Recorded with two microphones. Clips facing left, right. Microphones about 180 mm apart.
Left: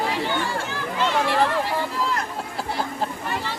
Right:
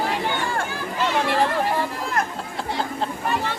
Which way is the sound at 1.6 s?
50° right (ahead or behind).